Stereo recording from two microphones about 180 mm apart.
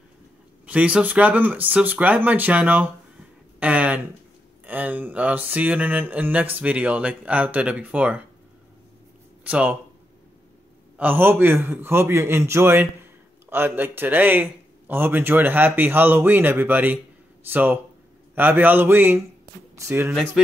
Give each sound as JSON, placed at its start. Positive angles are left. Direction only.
{"t": 0.7, "sound": "a man's voice", "side_deg": -5}
{"t": 3.5, "sound": "a sound", "side_deg": -10}
{"t": 4.6, "sound": "a man's voice", "side_deg": -10}
{"t": 9.4, "sound": "speech", "side_deg": -10}
{"t": 11.0, "sound": "a man's voice", "side_deg": -10}